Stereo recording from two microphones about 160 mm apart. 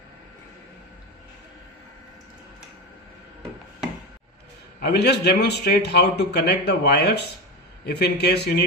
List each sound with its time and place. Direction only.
4.7 s a man's voice: 90° left